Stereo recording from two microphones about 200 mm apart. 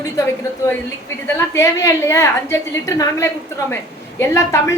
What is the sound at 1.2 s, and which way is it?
A woman's voice, 15° left (ahead or behind).